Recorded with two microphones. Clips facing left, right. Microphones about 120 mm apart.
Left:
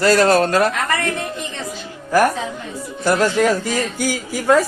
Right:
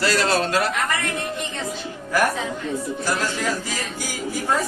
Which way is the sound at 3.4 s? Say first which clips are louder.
Left 9 dB; 60° left (ahead or behind).